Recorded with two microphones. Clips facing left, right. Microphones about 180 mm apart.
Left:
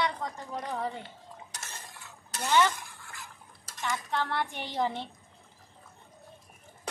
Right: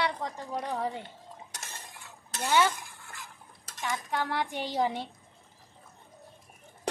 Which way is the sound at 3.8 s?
15° right (ahead or behind).